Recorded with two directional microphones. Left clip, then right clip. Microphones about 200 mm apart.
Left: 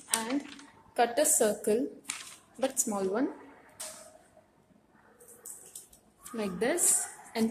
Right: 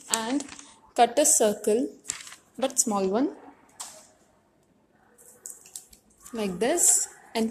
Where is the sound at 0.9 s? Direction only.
30° right (ahead or behind).